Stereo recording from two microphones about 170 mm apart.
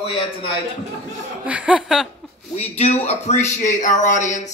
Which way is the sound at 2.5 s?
40° left (ahead or behind).